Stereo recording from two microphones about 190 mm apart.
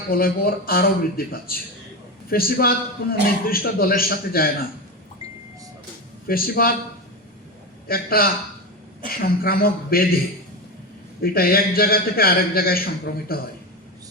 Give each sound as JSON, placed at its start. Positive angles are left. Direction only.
{"t": 0.1, "sound": "a man's voice", "side_deg": 50}
{"t": 6.2, "sound": "a man's voice", "side_deg": 50}
{"t": 7.9, "sound": "a man's voice", "side_deg": 50}
{"t": 11.2, "sound": "a man's voice", "side_deg": 50}